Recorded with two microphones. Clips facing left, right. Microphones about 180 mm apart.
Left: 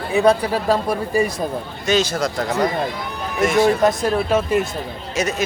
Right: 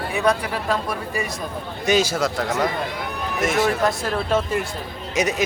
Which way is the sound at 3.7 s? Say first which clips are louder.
Left 5 dB; 20° left (ahead or behind).